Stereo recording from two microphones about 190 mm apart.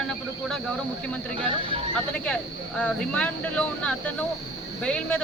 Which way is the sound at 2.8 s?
5° left (ahead or behind).